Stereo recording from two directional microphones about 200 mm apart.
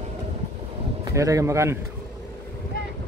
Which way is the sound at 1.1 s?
15° right (ahead or behind).